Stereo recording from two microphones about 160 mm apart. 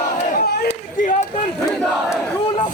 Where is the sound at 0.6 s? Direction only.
50° left (ahead or behind).